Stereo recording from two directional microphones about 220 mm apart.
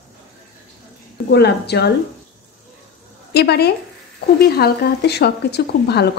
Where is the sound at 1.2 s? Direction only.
50° left (ahead or behind).